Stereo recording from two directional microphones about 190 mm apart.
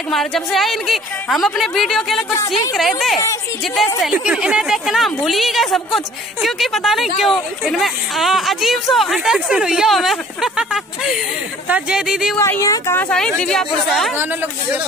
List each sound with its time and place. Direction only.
0.1 s a woman's voice: centre (ahead or behind)
12.4 s speech: 15° left (ahead or behind)
13.1 s a woman's voice: 5° left (ahead or behind)